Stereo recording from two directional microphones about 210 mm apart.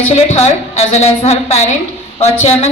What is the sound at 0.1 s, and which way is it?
A woman's voice, 30° left (ahead or behind).